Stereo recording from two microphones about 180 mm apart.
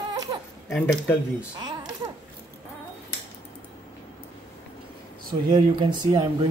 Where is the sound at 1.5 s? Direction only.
25° right (ahead or behind).